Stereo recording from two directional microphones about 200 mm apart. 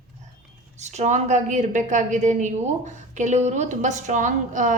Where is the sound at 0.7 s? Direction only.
35° right (ahead or behind).